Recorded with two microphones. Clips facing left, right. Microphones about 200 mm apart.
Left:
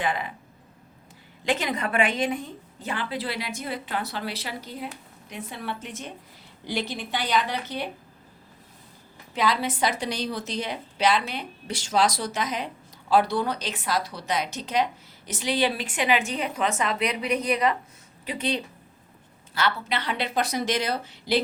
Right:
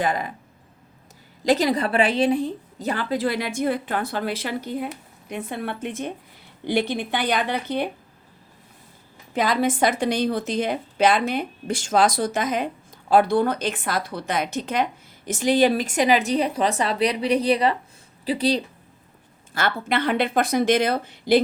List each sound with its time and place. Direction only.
0.0 s a woman's voice: 40° right (ahead or behind)
1.5 s a woman's voice: 35° right (ahead or behind); by 7.9 s 55° right (ahead or behind)
9.3 s a woman's voice: 50° right (ahead or behind)
19.5 s a woman's voice: 50° right (ahead or behind)